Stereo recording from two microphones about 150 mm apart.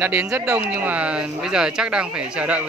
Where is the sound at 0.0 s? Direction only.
15° right (ahead or behind).